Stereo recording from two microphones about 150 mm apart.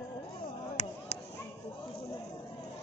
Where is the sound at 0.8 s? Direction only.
50° left (ahead or behind).